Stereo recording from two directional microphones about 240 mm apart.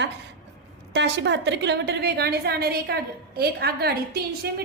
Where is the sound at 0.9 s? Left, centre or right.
Right.